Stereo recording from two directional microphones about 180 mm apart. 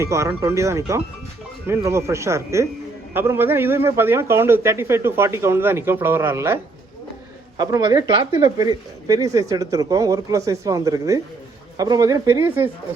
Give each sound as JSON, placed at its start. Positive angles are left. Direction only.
{"t": 0.0, "sound": "a man's voice", "side_deg": -15}